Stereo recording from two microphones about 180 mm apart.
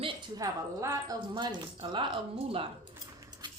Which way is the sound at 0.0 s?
20° right (ahead or behind).